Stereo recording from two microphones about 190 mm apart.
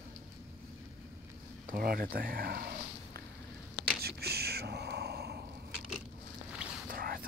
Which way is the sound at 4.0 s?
55° right (ahead or behind).